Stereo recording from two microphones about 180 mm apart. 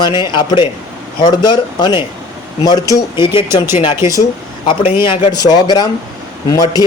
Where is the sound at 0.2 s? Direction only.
25° left (ahead or behind).